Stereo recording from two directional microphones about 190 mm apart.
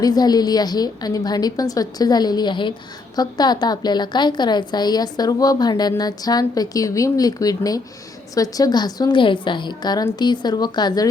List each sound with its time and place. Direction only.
0.0 s a woman's voice: 20° left (ahead or behind)